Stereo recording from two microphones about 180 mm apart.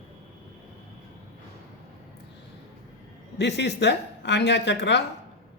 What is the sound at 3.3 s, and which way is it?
A woman's voice, 70° left (ahead or behind).